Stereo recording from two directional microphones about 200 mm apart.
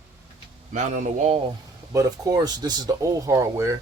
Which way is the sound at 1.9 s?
15° right (ahead or behind).